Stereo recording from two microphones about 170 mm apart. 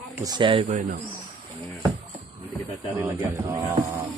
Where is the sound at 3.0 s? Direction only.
20° right (ahead or behind).